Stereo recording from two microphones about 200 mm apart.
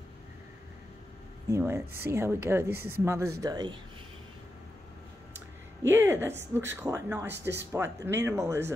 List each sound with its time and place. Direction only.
1.5 s speech: 15° right (ahead or behind)
5.9 s speech: 10° right (ahead or behind)